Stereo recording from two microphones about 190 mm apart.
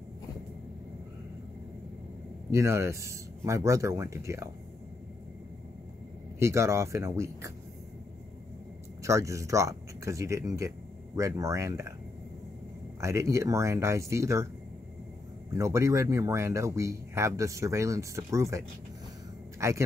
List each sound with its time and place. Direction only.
2.5 s speech: 15° right (ahead or behind)
6.4 s speech: 15° right (ahead or behind)
9.0 s speech: 15° right (ahead or behind)
13.0 s speech: 15° right (ahead or behind)
15.5 s speech: 15° right (ahead or behind)
19.6 s speech: 15° right (ahead or behind)